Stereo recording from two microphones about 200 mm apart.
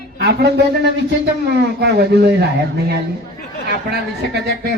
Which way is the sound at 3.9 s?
55° right (ahead or behind).